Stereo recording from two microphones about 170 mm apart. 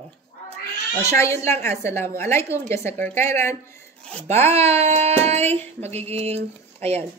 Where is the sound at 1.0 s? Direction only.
15° left (ahead or behind).